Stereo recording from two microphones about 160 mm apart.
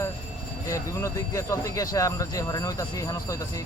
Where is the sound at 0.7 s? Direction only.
20° left (ahead or behind).